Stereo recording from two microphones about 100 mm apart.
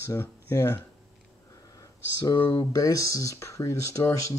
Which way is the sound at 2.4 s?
20° left (ahead or behind).